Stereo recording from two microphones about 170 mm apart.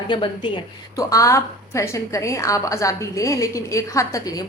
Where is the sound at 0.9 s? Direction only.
20° left (ahead or behind).